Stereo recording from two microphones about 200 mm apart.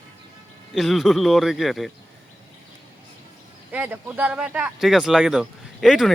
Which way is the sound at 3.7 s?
10° right (ahead or behind).